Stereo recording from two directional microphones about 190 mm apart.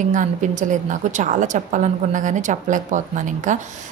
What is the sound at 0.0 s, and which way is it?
Speech, 40° right (ahead or behind).